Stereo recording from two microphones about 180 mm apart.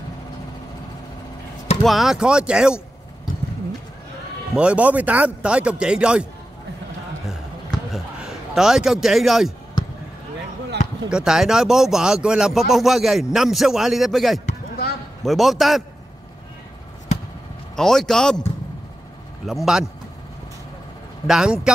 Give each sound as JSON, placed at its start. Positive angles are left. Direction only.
{"t": 1.8, "sound": "speech", "side_deg": 0}
{"t": 4.6, "sound": "speech", "side_deg": -5}
{"t": 7.2, "sound": "a sound", "side_deg": 0}
{"t": 11.1, "sound": "speech", "side_deg": -5}
{"t": 14.4, "sound": "basketball bounce", "side_deg": 55}
{"t": 15.2, "sound": "speech", "side_deg": 0}
{"t": 17.7, "sound": "speech", "side_deg": 0}
{"t": 19.4, "sound": "speech", "side_deg": 0}
{"t": 21.3, "sound": "speech", "side_deg": -5}